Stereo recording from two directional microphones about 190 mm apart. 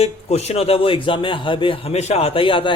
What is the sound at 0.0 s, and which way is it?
A man's voice, 35° left (ahead or behind).